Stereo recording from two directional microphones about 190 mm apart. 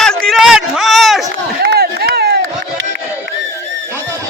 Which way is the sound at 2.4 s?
75° right (ahead or behind).